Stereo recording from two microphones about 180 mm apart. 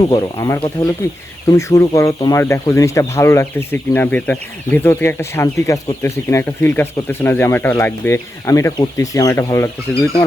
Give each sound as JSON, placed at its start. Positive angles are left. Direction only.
{"t": 0.1, "sound": "speech", "side_deg": 20}